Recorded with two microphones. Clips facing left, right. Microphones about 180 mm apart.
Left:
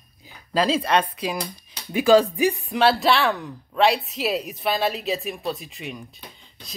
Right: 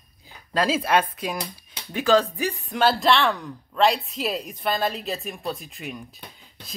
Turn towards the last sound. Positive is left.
turn(degrees=0)  # may be behind; listen again after turning